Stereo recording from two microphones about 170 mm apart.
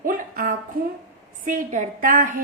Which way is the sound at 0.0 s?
55° right (ahead or behind).